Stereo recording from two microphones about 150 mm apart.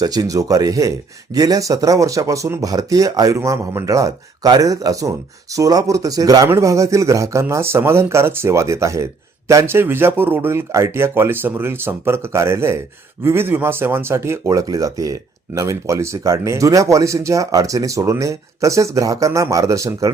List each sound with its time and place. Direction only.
0.0 s a man's voice: 25° right (ahead or behind)